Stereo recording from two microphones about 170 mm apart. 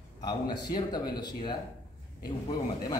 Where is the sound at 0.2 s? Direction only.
25° left (ahead or behind).